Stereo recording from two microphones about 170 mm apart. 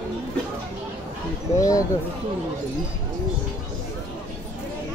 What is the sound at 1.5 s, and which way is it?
Speech, 20° left (ahead or behind).